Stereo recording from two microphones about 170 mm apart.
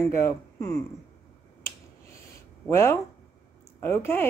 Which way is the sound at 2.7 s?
15° left (ahead or behind).